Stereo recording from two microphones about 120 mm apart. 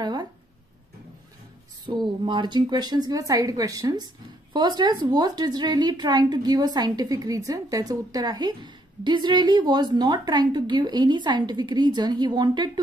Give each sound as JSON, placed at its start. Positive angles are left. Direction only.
{"t": 0.0, "sound": "speech", "side_deg": -35}
{"t": 1.9, "sound": "speech", "side_deg": -40}